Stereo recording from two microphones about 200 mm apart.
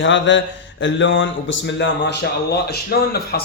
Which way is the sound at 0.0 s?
65° left (ahead or behind).